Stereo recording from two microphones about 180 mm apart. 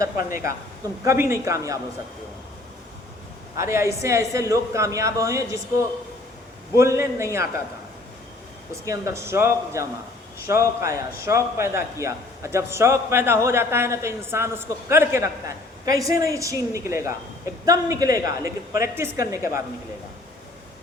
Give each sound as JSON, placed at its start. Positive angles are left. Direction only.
{"t": 1.0, "sound": "a man's voice", "side_deg": -15}
{"t": 3.6, "sound": "a man's voice", "side_deg": -15}
{"t": 8.8, "sound": "a man's voice", "side_deg": -15}